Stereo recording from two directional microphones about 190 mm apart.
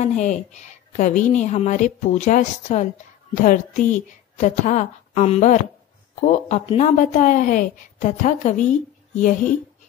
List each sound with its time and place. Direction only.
0.0 s a woman's voice: 40° left (ahead or behind)